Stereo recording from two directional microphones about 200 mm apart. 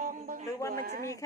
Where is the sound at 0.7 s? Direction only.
50° right (ahead or behind).